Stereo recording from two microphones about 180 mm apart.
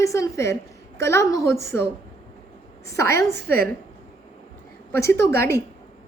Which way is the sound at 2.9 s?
15° left (ahead or behind).